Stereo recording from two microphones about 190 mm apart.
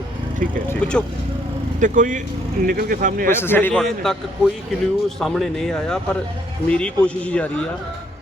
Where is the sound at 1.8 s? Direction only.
40° right (ahead or behind).